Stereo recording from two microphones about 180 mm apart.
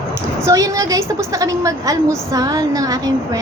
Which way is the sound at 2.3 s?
20° right (ahead or behind).